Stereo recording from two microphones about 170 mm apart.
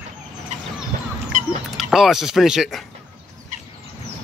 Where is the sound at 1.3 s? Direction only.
50° right (ahead or behind).